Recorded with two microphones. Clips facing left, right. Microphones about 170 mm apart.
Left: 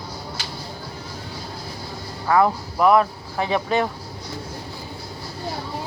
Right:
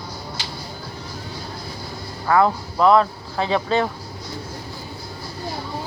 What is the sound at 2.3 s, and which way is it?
Speech, 10° left (ahead or behind).